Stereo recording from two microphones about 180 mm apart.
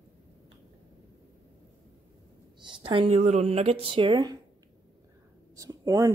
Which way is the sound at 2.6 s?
25° right (ahead or behind).